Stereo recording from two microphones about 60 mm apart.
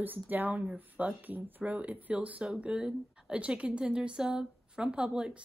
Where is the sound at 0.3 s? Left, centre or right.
Right.